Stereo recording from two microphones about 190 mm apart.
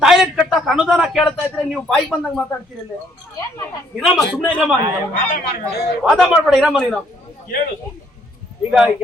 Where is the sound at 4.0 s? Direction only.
Centre (ahead or behind).